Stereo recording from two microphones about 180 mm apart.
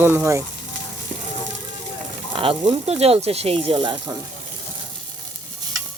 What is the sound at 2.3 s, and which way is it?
Speech, 30° right (ahead or behind).